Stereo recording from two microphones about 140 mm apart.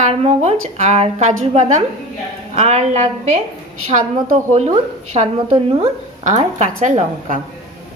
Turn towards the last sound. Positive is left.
turn(degrees=-60)  # may be behind; listen again after turning